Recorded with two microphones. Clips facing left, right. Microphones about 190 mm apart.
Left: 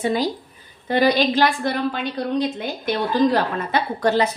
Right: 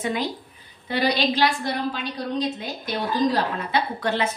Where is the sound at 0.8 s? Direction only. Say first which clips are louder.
Left 5 dB; 50° left (ahead or behind).